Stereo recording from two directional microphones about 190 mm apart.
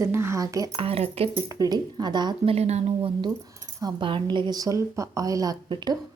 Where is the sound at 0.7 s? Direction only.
30° right (ahead or behind).